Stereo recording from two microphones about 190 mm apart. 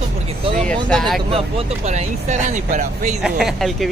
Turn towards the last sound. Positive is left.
turn(degrees=0)  # may be behind; listen again after turning